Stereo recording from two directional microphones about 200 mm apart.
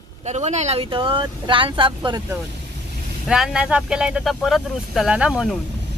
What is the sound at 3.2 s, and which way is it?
Speech, 5° right (ahead or behind).